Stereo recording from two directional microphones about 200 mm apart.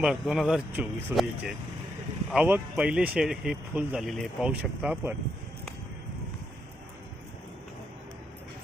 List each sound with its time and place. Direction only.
0.0 s speech: 5° right (ahead or behind)